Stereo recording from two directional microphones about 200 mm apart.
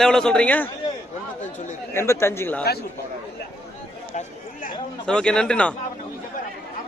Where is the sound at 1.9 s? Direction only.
15° left (ahead or behind).